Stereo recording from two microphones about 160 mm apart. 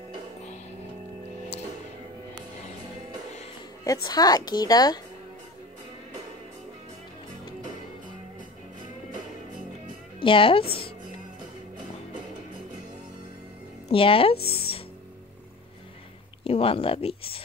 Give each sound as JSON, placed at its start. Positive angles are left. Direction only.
{"t": 3.8, "sound": "a woman's voice", "side_deg": 25}
{"t": 10.2, "sound": "speech", "side_deg": 35}
{"t": 13.8, "sound": "speech", "side_deg": 35}
{"t": 16.4, "sound": "speech", "side_deg": 35}